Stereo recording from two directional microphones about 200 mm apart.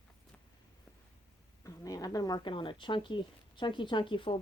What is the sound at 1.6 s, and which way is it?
Speech, 20° left (ahead or behind).